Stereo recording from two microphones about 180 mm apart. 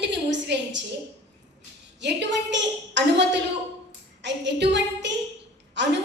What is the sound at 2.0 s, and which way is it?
A woman's voice, 75° right (ahead or behind).